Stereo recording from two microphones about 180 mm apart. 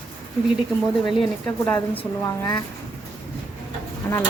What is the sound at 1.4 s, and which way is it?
Speech, 5° left (ahead or behind).